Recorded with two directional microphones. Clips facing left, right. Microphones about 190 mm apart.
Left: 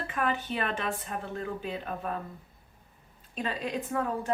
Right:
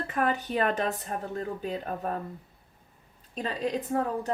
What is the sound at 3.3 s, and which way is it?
Speech, 40° right (ahead or behind).